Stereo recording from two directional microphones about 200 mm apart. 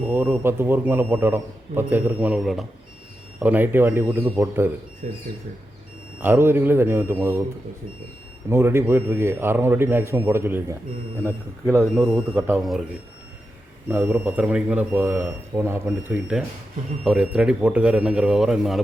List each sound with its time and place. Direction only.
0.0 s a man's voice: 5° right (ahead or behind)
5.0 s speech: 35° right (ahead or behind)
6.1 s a man's voice: 10° right (ahead or behind)
8.4 s a man's voice: 10° right (ahead or behind)
11.2 s speech: 10° left (ahead or behind)
11.7 s a man's voice: 10° right (ahead or behind)
13.8 s a man's voice: 10° right (ahead or behind)